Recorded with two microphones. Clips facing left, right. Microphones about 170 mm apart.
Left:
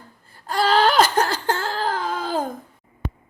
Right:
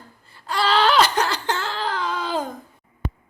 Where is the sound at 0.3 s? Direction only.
45° left (ahead or behind).